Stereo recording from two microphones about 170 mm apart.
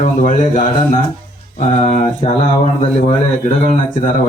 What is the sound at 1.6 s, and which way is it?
Mantra, 35° left (ahead or behind).